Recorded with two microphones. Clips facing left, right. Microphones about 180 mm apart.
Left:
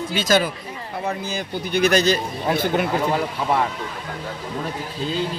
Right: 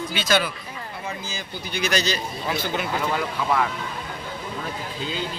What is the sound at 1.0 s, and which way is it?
Speech, 65° left (ahead or behind).